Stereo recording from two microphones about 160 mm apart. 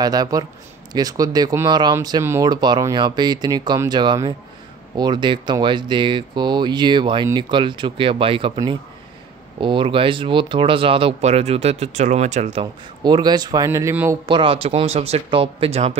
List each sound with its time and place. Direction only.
0.0 s speech: 25° right (ahead or behind)
9.6 s speech: 30° right (ahead or behind)
13.0 s speech: 25° right (ahead or behind)
14.2 s speech: 30° right (ahead or behind)